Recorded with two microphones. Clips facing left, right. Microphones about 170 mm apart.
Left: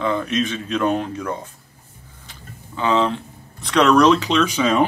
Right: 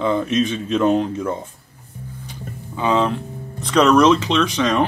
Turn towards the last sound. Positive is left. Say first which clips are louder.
# even
turn(degrees=5)  # may be behind; listen again after turning